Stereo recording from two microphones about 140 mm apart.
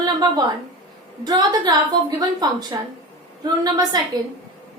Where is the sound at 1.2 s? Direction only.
30° right (ahead or behind).